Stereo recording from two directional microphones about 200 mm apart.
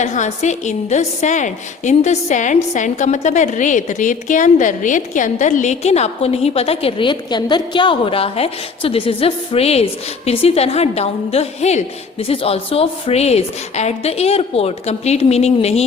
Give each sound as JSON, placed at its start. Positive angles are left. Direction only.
{"t": 0.0, "sound": "a woman's voice", "side_deg": 35}